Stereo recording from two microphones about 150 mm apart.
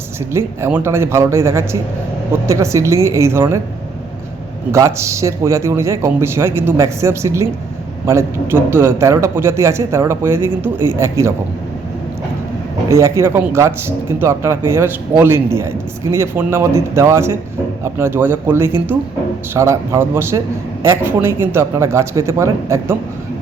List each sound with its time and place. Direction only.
0.3 s a man's voice: 15° right (ahead or behind)
4.7 s a man's voice: 20° right (ahead or behind)
12.9 s a man's voice: 20° right (ahead or behind)